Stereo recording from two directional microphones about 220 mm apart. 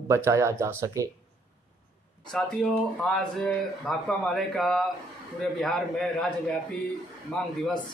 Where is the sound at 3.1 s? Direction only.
Centre (ahead or behind).